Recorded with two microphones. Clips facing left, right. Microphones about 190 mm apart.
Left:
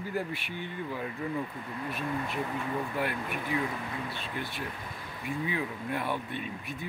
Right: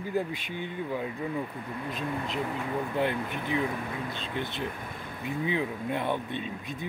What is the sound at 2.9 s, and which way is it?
Speech, 25° right (ahead or behind).